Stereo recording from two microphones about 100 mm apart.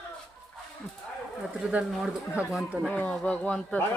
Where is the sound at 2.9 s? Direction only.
10° left (ahead or behind).